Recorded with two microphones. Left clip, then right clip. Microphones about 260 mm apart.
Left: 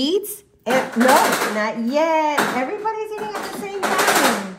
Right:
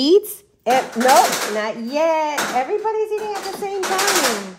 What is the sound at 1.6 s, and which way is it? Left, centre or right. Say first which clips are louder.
Speech: even; right.